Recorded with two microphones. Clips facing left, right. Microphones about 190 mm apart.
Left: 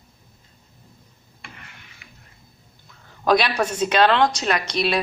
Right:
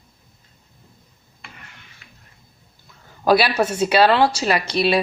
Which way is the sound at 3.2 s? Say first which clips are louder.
Right 3 dB; 5° right (ahead or behind).